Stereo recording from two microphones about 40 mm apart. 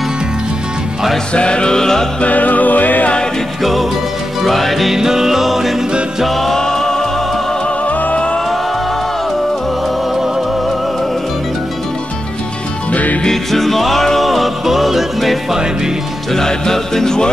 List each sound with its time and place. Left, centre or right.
1.3 s music: left
2.2 s music: left
4.4 s music: centre
4.9 s music: centre
7.8 s music: left
12.9 s music: left
13.2 s music: centre
16.3 s music: centre